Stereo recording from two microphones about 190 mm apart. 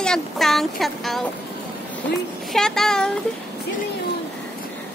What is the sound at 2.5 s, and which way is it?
Speech, centre (ahead or behind).